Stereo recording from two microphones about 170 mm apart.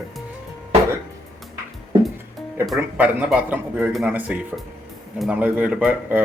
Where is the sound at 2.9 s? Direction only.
10° right (ahead or behind).